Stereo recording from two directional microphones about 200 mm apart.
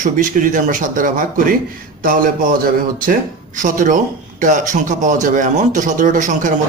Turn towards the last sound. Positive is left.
turn(degrees=-40)  # may be behind; listen again after turning